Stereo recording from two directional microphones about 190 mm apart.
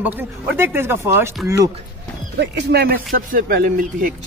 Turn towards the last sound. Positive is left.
turn(degrees=-50)  # may be behind; listen again after turning